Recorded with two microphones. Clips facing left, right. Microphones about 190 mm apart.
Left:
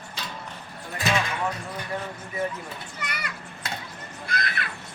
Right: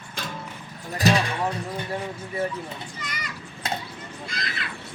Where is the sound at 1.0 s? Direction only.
35° right (ahead or behind).